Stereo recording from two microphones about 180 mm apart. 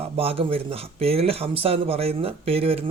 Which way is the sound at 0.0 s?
30° right (ahead or behind).